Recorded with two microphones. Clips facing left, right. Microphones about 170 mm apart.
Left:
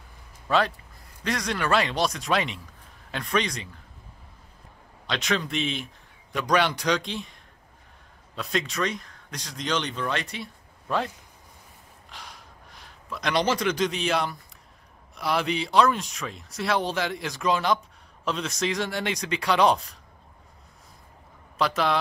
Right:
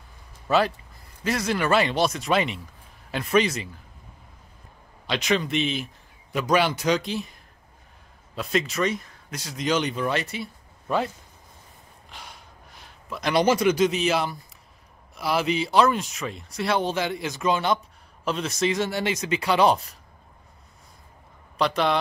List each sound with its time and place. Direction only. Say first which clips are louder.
0.5 s speech: right 2 dB; 5° right (ahead or behind)
5.0 s speech: right 3 dB; centre (ahead or behind)
8.4 s speech: right 3 dB; 5° right (ahead or behind)
12.1 s gasp: right 1 dB; centre (ahead or behind)
15.1 s speech: right 2 dB; 5° right (ahead or behind)
21.5 s speech: right 2 dB; centre (ahead or behind)